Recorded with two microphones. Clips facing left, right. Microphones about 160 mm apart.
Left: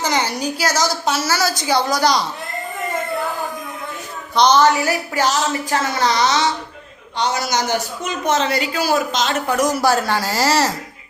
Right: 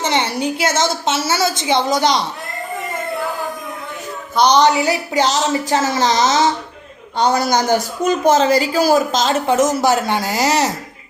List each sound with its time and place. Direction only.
0.0 s speech: 25° right (ahead or behind)
4.4 s speech: 15° right (ahead or behind)
7.2 s a man's voice: 50° right (ahead or behind)
8.2 s speech: 35° right (ahead or behind); by 10.7 s 20° right (ahead or behind)